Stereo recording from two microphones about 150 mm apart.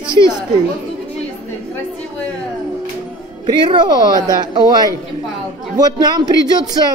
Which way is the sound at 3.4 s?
30° right (ahead or behind).